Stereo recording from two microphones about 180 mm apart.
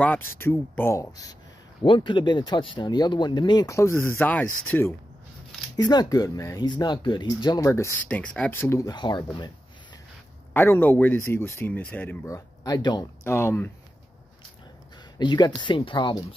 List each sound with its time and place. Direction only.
0.0 s speech: 10° left (ahead or behind)
5.8 s speech: 25° left (ahead or behind)
10.5 s speech: 10° left (ahead or behind)
15.1 s speech: 25° left (ahead or behind)